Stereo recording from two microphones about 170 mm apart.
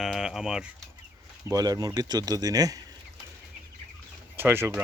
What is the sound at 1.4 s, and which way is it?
Speech, 20° right (ahead or behind).